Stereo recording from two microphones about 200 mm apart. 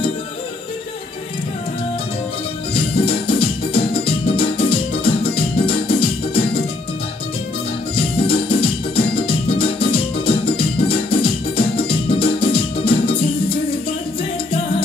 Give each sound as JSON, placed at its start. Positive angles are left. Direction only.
{"t": 2.7, "sound": "music", "side_deg": 25}
{"t": 7.9, "sound": "music", "side_deg": 25}